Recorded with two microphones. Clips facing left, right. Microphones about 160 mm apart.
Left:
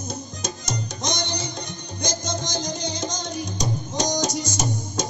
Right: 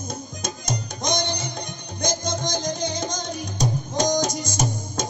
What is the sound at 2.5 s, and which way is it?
Music, 55° right (ahead or behind).